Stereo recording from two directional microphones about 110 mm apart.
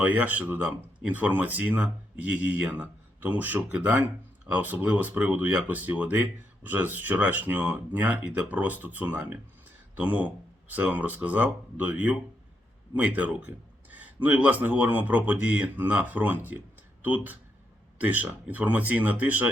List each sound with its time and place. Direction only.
0.0 s speech: 15° right (ahead or behind)
16.5 s a sound: 15° right (ahead or behind)
18.0 s speech: 15° right (ahead or behind)